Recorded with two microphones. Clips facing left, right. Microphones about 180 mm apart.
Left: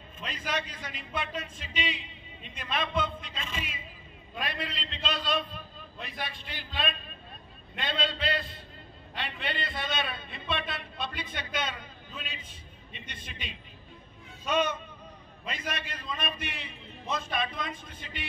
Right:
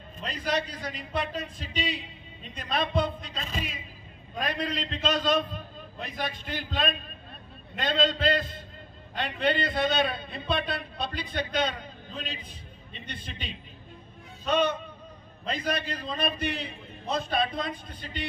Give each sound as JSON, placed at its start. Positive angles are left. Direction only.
{"t": 0.2, "sound": "a man's voice", "side_deg": -35}